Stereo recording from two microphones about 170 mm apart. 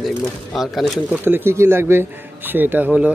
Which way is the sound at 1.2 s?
15° right (ahead or behind).